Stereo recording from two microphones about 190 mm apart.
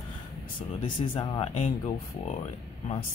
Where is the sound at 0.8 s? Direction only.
30° left (ahead or behind).